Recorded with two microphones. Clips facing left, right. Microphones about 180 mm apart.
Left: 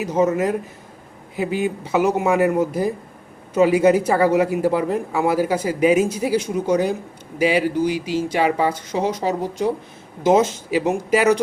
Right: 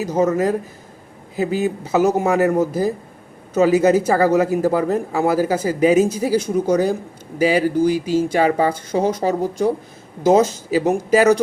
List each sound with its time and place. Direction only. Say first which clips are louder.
0.0 s speech: right 1 dB; 35° right (ahead or behind)
10.2 s speech: right 2 dB; 35° right (ahead or behind)